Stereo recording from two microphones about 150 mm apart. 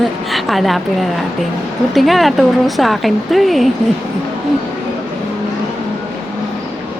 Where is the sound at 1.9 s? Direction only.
Centre (ahead or behind).